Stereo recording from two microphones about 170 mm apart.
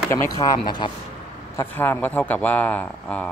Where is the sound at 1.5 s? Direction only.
10° left (ahead or behind).